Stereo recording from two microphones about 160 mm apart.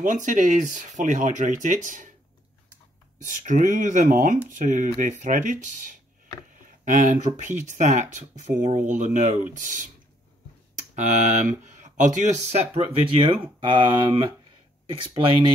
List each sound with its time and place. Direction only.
0.0 s speech: 50° right (ahead or behind)
3.3 s speech: 50° right (ahead or behind)
11.0 s speech: 45° right (ahead or behind); by 14.3 s 30° right (ahead or behind)